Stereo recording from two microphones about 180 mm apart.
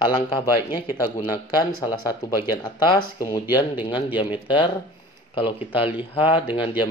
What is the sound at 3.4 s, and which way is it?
Speech, 10° right (ahead or behind).